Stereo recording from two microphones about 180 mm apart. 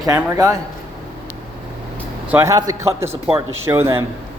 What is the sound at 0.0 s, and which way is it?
Speech, 20° right (ahead or behind).